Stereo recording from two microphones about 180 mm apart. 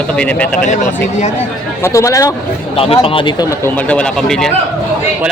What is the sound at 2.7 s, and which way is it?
Speech, 30° left (ahead or behind).